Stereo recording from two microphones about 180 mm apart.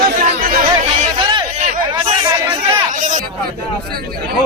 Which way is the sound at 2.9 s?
45° right (ahead or behind).